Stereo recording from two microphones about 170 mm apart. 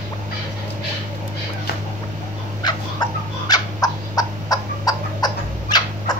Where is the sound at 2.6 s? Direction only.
25° left (ahead or behind).